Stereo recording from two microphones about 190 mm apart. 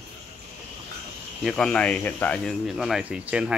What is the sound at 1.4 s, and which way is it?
Speech, 5° left (ahead or behind).